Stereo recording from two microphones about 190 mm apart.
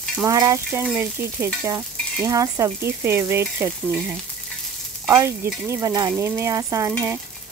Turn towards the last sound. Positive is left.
turn(degrees=-15)  # may be behind; listen again after turning